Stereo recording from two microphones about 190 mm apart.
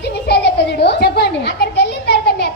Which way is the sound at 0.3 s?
60° left (ahead or behind).